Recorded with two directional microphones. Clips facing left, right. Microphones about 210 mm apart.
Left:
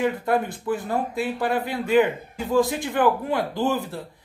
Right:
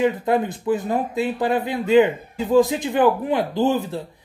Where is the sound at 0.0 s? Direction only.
20° right (ahead or behind).